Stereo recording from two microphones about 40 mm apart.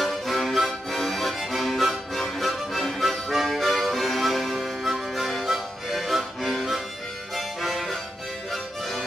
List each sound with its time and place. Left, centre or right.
0.0 s music: centre
7.3 s harmonica: centre